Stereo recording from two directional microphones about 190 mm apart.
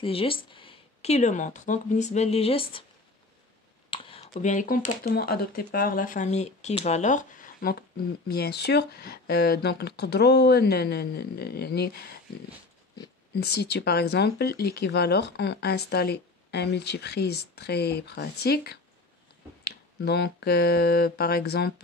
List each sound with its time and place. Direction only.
0.0 s speech: 30° left (ahead or behind)
3.9 s speech: 30° left (ahead or behind); by 7.7 s 45° left (ahead or behind)
8.3 s speech: 60° left (ahead or behind)
13.3 s speech: 55° left (ahead or behind)